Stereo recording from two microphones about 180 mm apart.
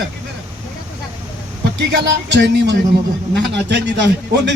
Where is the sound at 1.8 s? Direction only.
75° right (ahead or behind).